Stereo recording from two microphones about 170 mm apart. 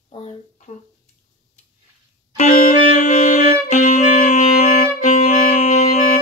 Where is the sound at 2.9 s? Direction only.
40° left (ahead or behind).